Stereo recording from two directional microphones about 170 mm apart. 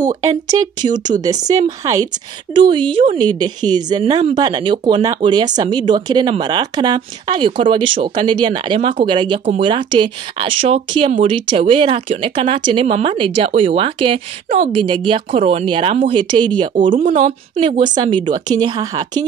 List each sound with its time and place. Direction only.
0.0 s speech: 20° right (ahead or behind)
4.4 s speech: 25° right (ahead or behind)
16.8 s speech: 50° right (ahead or behind)
17.6 s speech: 30° right (ahead or behind)